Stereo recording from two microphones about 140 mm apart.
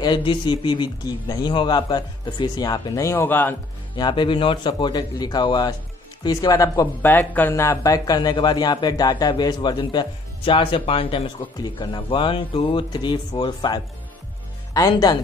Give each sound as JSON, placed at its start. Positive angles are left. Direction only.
{"t": 0.0, "sound": "speech", "side_deg": 35}
{"t": 3.9, "sound": "speech", "side_deg": 35}
{"t": 7.0, "sound": "speech", "side_deg": 15}